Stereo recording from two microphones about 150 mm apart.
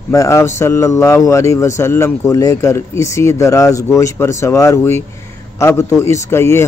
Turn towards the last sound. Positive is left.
turn(degrees=15)  # may be behind; listen again after turning